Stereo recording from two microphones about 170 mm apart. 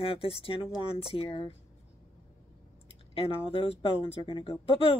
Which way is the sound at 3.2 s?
35° left (ahead or behind).